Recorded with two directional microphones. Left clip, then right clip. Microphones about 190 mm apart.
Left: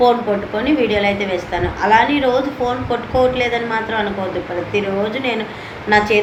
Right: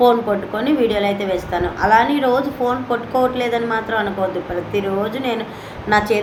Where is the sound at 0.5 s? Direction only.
15° right (ahead or behind).